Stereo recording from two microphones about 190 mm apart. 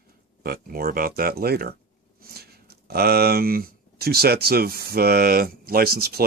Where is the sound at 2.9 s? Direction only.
55° right (ahead or behind).